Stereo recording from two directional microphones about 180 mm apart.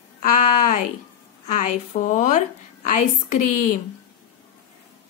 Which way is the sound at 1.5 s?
40° left (ahead or behind).